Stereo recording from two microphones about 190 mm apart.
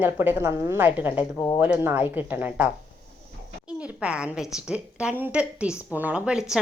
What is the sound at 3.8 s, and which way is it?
Speech, 5° right (ahead or behind).